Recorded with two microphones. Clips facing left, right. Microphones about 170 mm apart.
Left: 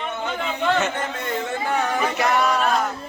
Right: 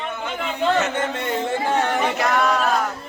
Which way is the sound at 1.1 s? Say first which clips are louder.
Right 3 dB; 25° right (ahead or behind).